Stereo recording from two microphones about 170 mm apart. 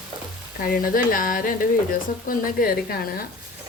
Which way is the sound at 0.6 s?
55° left (ahead or behind).